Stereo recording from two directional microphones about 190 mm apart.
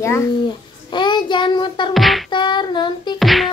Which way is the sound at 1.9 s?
Centre (ahead or behind).